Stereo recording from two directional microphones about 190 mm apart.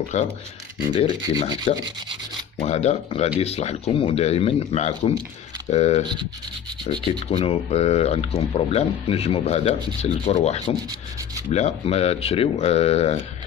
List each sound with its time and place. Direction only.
0.1 s speech: 40° left (ahead or behind)
0.7 s speech: 25° left (ahead or behind)
7.2 s speech: 35° left (ahead or behind)